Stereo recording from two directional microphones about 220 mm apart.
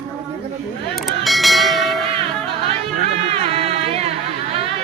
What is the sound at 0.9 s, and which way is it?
Bell, centre (ahead or behind).